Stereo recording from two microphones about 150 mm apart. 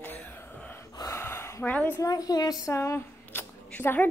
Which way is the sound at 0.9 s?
20° left (ahead or behind).